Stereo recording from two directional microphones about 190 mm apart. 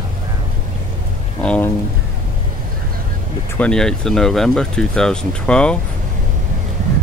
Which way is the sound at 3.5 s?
5° left (ahead or behind).